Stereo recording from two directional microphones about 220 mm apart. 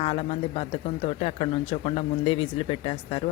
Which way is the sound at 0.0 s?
25° left (ahead or behind).